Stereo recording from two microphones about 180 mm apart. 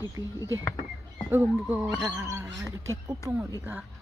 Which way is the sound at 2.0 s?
15° right (ahead or behind).